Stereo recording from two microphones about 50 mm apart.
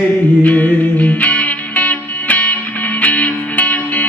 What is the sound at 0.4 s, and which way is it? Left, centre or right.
Music, left.